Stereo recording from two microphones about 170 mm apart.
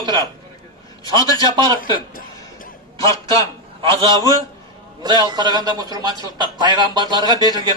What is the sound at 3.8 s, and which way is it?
Speech, 30° right (ahead or behind).